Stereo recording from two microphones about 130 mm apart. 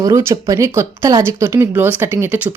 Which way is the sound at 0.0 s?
20° right (ahead or behind).